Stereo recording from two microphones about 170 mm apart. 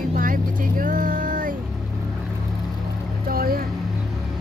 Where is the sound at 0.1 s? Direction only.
55° right (ahead or behind).